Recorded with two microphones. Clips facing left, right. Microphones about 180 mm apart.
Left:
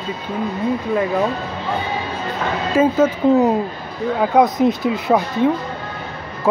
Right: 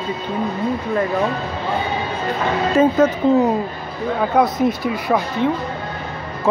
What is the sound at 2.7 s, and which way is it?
Speech, 10° left (ahead or behind).